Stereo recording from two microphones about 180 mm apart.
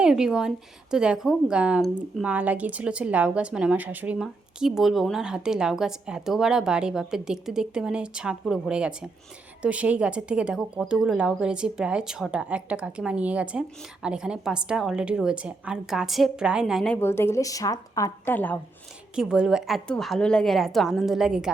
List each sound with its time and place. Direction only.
0.0 s speech: 5° right (ahead or behind)
19.1 s speech: 5° right (ahead or behind)